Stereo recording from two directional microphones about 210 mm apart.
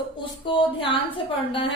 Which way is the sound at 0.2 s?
25° left (ahead or behind).